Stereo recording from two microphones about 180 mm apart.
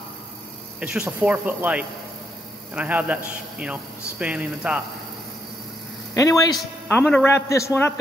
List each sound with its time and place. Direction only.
0.7 s speech: 10° right (ahead or behind)
6.1 s a man's voice: 20° left (ahead or behind)